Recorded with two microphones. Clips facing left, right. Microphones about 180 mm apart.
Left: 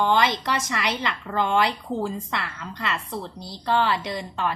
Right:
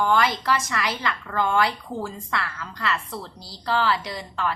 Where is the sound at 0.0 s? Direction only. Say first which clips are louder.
Even; 25° left (ahead or behind).